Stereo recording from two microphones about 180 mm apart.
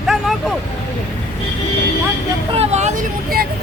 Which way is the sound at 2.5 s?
35° right (ahead or behind).